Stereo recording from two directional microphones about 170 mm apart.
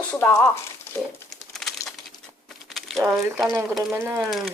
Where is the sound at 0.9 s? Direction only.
15° left (ahead or behind).